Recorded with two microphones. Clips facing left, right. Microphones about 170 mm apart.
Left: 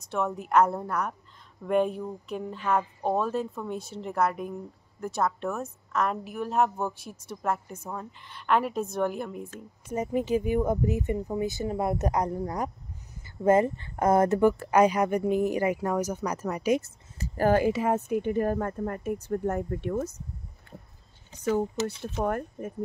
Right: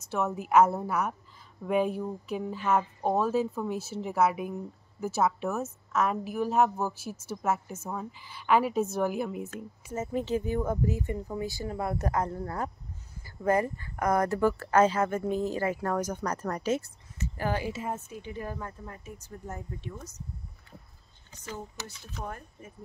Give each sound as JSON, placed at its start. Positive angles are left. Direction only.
{"t": 0.0, "sound": "speech", "side_deg": -5}
{"t": 9.9, "sound": "speech", "side_deg": 10}
{"t": 17.2, "sound": "speech", "side_deg": 45}
{"t": 17.8, "sound": "a woman's voice", "side_deg": 65}
{"t": 21.8, "sound": "a woman's voice", "side_deg": 65}